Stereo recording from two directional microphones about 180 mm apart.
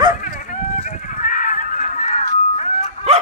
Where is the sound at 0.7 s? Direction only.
45° left (ahead or behind).